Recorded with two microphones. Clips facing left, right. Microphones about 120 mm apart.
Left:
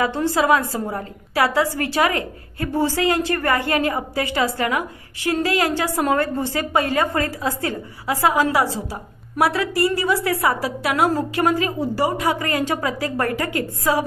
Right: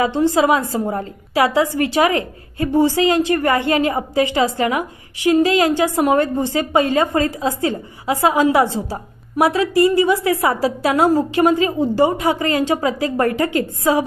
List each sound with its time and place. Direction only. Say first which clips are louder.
0.0 s a woman's voice: right 4 dB; 20° right (ahead or behind)